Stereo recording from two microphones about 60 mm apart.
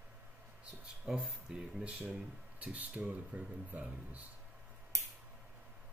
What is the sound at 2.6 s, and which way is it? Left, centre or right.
Speech, right.